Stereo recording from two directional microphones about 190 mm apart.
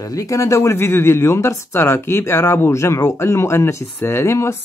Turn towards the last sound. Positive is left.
turn(degrees=15)  # may be behind; listen again after turning